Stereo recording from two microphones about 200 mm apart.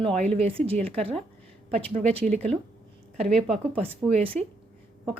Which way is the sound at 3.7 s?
30° right (ahead or behind).